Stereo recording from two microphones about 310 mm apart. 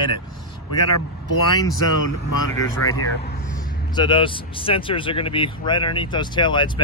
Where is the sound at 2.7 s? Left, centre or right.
Centre.